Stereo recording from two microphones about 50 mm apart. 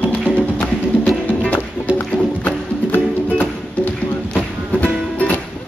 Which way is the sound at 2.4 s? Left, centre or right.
Left.